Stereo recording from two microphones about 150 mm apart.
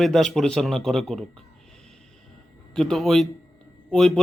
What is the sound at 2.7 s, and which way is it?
Speech, centre (ahead or behind).